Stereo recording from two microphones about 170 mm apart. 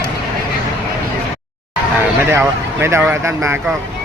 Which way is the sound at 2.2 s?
15° right (ahead or behind).